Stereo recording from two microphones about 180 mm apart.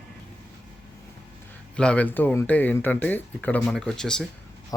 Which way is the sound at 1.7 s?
5° left (ahead or behind).